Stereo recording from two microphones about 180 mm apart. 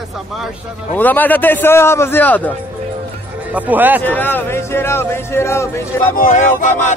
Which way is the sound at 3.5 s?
10° right (ahead or behind).